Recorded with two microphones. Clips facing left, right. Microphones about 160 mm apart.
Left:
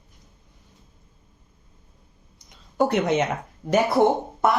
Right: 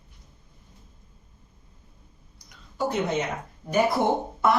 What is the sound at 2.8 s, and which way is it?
Speech, 75° left (ahead or behind).